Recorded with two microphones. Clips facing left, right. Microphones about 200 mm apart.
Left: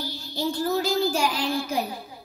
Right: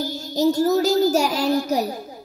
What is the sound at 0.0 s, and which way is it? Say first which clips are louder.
A child's voice: right 9 dB; 45° right (ahead or behind).